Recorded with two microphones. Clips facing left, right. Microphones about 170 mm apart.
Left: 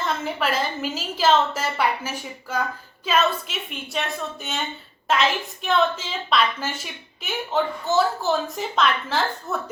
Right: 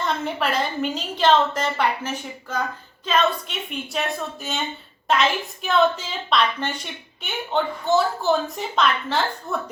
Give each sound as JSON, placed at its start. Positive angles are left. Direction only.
{"t": 0.0, "sound": "a woman's voice", "side_deg": 0}